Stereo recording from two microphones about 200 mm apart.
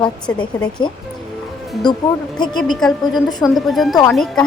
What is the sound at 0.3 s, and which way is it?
Speech, 20° left (ahead or behind).